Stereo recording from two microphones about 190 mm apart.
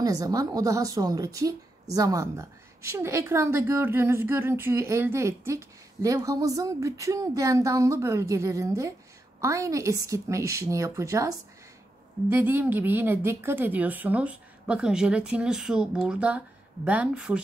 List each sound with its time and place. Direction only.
0.0 s a woman's voice: 20° right (ahead or behind)